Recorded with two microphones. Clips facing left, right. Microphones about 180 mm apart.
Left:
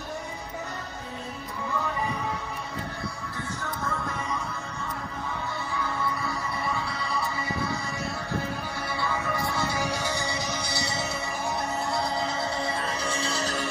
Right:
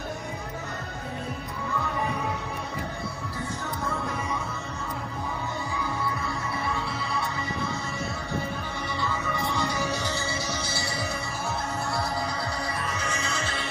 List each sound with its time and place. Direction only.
6.2 s music: centre (ahead or behind)
9.0 s music: 10° left (ahead or behind); by 13.7 s 40° left (ahead or behind)